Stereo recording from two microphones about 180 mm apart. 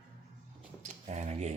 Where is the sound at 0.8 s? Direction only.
40° right (ahead or behind).